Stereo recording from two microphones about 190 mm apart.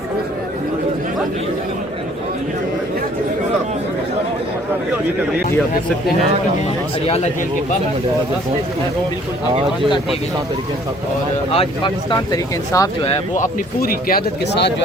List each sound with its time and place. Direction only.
11.5 s speech: 25° left (ahead or behind)
13.3 s speech: 45° left (ahead or behind); by 14.8 s 60° left (ahead or behind)